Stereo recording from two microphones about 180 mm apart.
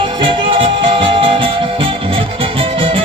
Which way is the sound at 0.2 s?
30° right (ahead or behind).